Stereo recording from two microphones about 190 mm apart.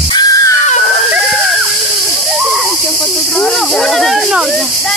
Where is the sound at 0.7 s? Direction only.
40° left (ahead or behind).